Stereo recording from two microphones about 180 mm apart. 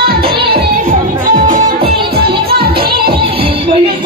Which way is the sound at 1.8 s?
60° right (ahead or behind).